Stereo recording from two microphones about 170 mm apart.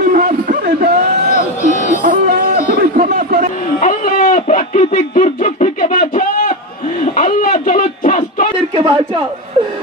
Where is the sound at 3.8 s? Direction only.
55° left (ahead or behind).